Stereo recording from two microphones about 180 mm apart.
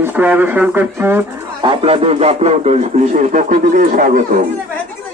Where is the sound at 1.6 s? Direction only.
30° right (ahead or behind).